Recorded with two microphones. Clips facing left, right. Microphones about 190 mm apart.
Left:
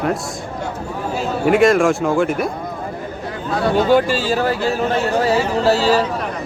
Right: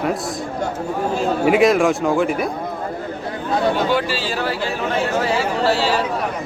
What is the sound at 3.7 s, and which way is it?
A man's voice, 45° left (ahead or behind).